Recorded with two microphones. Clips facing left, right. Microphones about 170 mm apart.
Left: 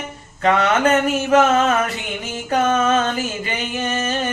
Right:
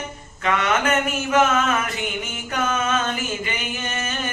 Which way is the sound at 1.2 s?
35° left (ahead or behind).